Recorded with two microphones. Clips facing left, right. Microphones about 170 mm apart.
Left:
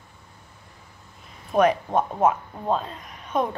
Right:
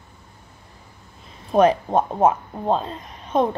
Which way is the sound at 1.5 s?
30° right (ahead or behind).